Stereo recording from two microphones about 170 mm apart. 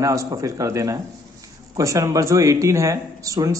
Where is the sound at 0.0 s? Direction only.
20° right (ahead or behind).